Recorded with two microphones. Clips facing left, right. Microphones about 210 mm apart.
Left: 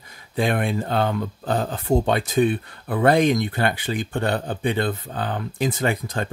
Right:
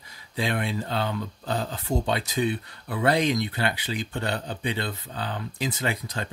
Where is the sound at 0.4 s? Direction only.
50° left (ahead or behind).